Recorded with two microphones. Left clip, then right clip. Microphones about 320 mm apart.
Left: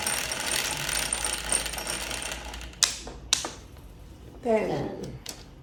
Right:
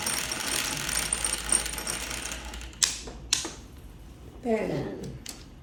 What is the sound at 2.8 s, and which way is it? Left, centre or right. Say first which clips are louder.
Tap: left 2 dB; centre.